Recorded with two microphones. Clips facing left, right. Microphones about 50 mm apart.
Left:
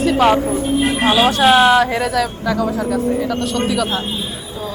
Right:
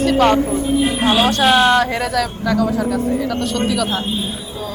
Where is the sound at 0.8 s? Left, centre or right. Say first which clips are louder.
Left 1 dB; left.